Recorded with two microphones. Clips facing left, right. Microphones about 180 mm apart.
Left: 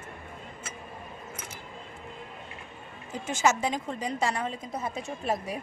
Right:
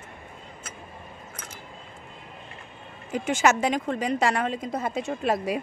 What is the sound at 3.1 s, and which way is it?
A woman's voice, 75° right (ahead or behind).